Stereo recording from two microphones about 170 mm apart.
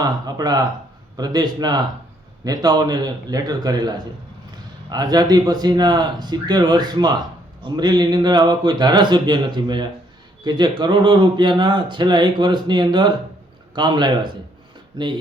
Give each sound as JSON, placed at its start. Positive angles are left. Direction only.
{"t": 0.0, "sound": "speech", "side_deg": -25}